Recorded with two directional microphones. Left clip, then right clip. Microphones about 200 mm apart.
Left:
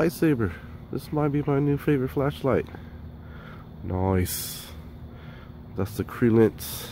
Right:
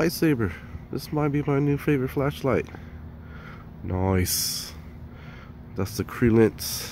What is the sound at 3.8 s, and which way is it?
Speech, centre (ahead or behind).